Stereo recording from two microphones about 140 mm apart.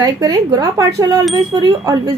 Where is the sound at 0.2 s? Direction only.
30° right (ahead or behind).